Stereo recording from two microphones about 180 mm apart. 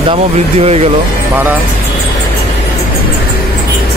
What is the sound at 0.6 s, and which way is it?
Speech, 35° right (ahead or behind).